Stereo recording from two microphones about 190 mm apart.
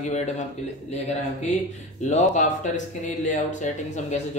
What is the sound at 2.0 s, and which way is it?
Speech, 40° left (ahead or behind).